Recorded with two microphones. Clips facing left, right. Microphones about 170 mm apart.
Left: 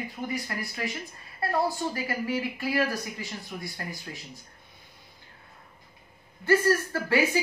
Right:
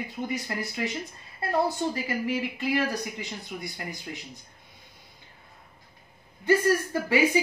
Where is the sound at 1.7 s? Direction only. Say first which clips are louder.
Right 2 dB; 20° right (ahead or behind).